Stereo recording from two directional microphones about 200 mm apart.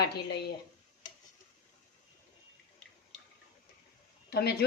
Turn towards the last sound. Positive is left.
turn(degrees=50)  # may be behind; listen again after turning